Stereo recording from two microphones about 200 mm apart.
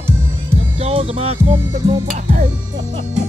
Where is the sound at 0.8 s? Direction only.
30° right (ahead or behind).